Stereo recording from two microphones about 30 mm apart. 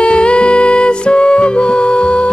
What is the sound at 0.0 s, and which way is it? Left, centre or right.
Music, left.